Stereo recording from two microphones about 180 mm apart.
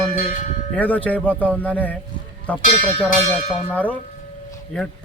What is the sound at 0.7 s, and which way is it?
Speech, 10° left (ahead or behind).